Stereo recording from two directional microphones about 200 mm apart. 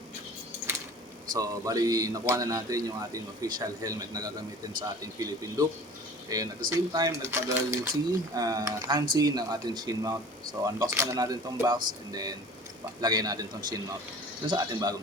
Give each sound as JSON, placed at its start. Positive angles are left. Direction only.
{"t": 1.3, "sound": "speech", "side_deg": -15}